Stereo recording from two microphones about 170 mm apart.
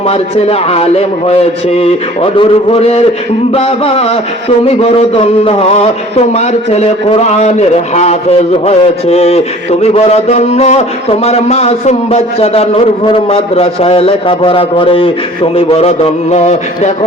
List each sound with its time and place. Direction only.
0.1 s a man's voice: 35° left (ahead or behind)